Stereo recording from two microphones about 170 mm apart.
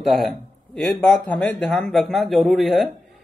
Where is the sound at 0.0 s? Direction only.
Centre (ahead or behind).